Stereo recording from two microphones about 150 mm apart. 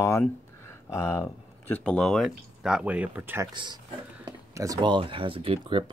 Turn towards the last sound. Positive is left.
turn(degrees=-35)  # may be behind; listen again after turning